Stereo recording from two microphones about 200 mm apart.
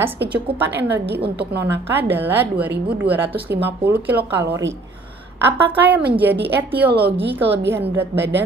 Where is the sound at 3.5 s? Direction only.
55° right (ahead or behind).